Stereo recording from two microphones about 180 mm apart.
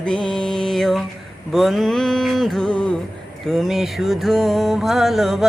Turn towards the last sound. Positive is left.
turn(degrees=0)  # may be behind; listen again after turning